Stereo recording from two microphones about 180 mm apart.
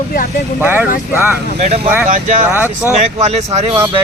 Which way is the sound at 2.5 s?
10° right (ahead or behind).